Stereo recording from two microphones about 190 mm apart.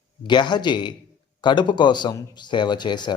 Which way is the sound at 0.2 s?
25° left (ahead or behind).